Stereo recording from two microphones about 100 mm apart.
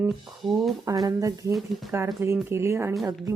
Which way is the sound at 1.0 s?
35° right (ahead or behind).